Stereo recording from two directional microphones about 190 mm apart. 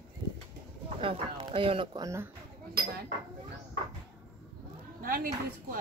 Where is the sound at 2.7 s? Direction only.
55° right (ahead or behind).